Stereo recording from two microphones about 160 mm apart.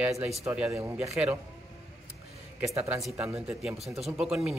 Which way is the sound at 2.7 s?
20° right (ahead or behind).